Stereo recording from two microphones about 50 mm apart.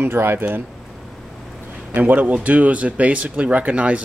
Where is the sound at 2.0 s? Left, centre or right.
Right.